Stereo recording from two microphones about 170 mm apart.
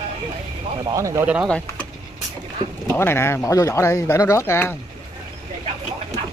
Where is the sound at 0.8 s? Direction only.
20° right (ahead or behind).